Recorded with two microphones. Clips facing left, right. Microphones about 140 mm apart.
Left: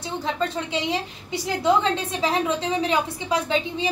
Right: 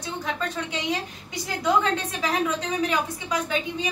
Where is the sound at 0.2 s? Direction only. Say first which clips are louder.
Left 4 dB; 30° left (ahead or behind).